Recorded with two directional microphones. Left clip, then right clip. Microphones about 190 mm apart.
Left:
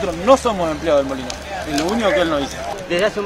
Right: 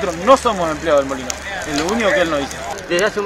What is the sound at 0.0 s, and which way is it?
Speech, 5° right (ahead or behind).